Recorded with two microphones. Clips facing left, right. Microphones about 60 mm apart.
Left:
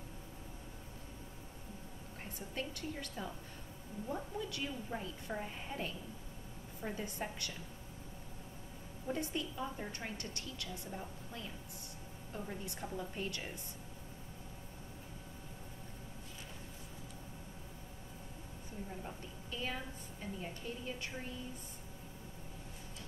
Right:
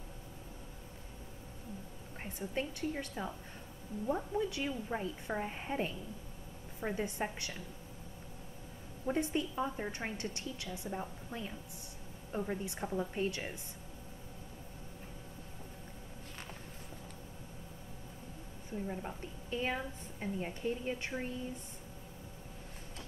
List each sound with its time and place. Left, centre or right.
2.5 s a woman's voice: right
9.0 s a woman's voice: right
18.9 s a woman's voice: right